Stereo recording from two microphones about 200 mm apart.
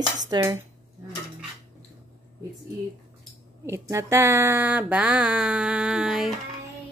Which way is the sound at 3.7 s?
15° right (ahead or behind).